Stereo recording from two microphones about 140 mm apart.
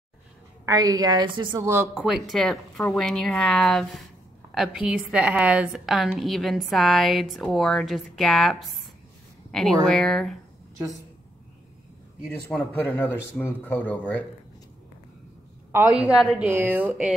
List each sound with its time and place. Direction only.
0.7 s a woman's voice: 25° right (ahead or behind)
1.6 s a woman's voice: 20° right (ahead or behind)
2.0 s a woman's voice: centre (ahead or behind)
12.3 s speech: 10° left (ahead or behind)
16.2 s a woman's voice: centre (ahead or behind)
16.4 s a woman's voice: 15° right (ahead or behind)